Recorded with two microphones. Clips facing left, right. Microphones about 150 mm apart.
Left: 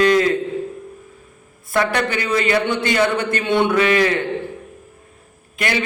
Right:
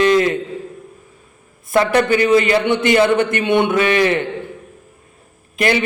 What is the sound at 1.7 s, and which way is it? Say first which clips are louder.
A man's voice: right 5 dB; 30° right (ahead or behind).